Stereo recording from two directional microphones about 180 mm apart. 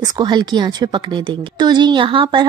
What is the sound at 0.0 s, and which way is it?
A woman's voice, 25° right (ahead or behind).